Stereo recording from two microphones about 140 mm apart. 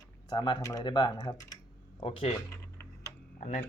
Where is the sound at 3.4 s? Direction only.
70° left (ahead or behind).